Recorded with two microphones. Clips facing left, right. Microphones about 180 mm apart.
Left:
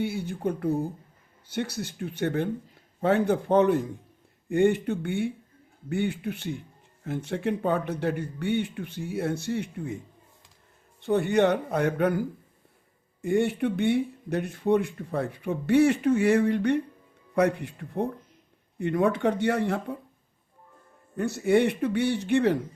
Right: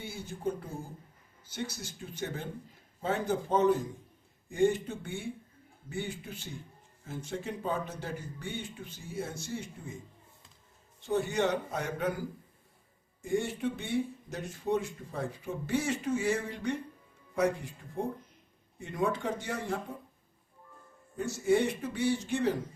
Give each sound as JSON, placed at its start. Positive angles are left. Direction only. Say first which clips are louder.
{"t": 0.0, "sound": "speech", "louder": "left 7 dB", "side_deg": 65}
{"t": 11.0, "sound": "speech", "louder": "left 7 dB", "side_deg": 60}
{"t": 13.2, "sound": "speech", "louder": "left 7 dB", "side_deg": 65}
{"t": 21.2, "sound": "speech", "louder": "left 5 dB", "side_deg": 60}